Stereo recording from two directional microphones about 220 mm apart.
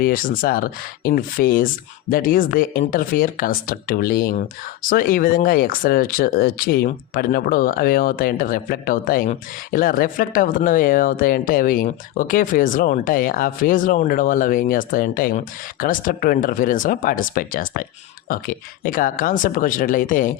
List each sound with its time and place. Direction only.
0.0 s speech: 40° left (ahead or behind)